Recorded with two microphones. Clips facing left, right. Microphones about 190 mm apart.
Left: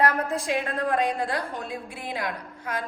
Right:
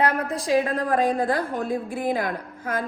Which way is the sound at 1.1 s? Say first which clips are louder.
Right 5 dB; 50° right (ahead or behind).